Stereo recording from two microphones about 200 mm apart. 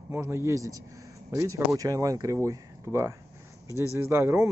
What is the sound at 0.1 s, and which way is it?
Speech, 10° right (ahead or behind).